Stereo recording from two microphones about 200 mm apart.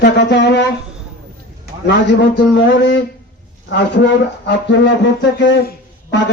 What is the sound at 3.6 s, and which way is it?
A man's voice, 65° left (ahead or behind).